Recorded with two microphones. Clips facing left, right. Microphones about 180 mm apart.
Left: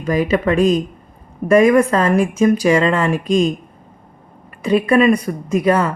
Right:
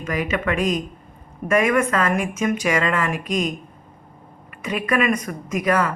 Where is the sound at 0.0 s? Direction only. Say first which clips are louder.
Left 7 dB; 30° left (ahead or behind).